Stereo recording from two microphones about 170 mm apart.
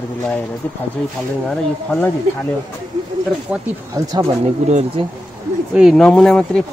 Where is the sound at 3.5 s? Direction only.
5° right (ahead or behind).